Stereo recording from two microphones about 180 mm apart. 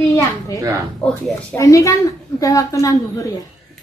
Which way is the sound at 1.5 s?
15° left (ahead or behind).